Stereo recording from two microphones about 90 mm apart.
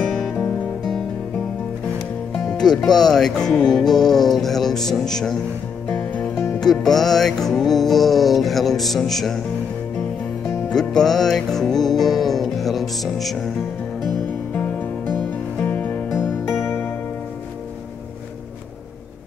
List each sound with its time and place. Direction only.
0.0 s music: 5° right (ahead or behind)
2.4 s speech: 5° left (ahead or behind)
5.9 s music: 15° left (ahead or behind)
6.6 s speech: 5° left (ahead or behind)
10.7 s speech: 5° left (ahead or behind)
11.8 s music: centre (ahead or behind)
14.0 s music: 15° left (ahead or behind)